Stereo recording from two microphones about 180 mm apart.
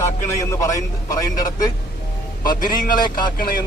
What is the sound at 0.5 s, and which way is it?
A man's voice, 15° left (ahead or behind).